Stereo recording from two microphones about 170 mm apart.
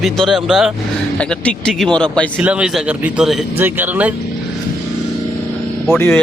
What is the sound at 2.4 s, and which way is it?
A man's voice, 5° right (ahead or behind).